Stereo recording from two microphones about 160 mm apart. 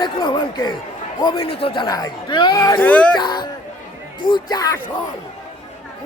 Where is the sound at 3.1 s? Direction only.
25° left (ahead or behind).